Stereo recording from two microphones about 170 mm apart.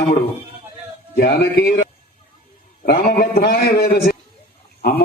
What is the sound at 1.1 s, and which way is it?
Speech, 65° left (ahead or behind).